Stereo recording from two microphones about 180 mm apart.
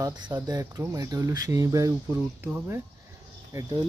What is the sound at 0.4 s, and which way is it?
Speech, 20° right (ahead or behind).